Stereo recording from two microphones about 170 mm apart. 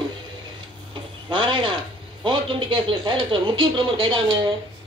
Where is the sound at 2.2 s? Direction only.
30° right (ahead or behind).